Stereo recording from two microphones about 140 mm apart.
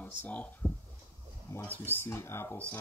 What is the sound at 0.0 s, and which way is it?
Speech, 10° left (ahead or behind).